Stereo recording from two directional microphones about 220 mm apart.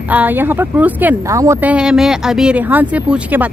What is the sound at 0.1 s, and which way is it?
Speech, 10° right (ahead or behind).